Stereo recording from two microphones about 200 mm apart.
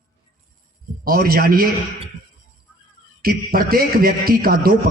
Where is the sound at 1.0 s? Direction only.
45° right (ahead or behind).